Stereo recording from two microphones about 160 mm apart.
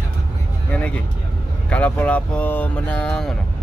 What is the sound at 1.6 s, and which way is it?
Speech, 10° left (ahead or behind).